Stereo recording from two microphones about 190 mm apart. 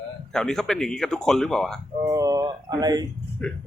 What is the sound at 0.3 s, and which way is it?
Speech, centre (ahead or behind).